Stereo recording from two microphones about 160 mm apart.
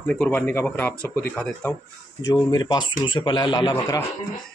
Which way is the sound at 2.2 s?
25° left (ahead or behind).